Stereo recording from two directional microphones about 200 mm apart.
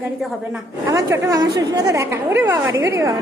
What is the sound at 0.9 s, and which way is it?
A woman's voice, 15° right (ahead or behind).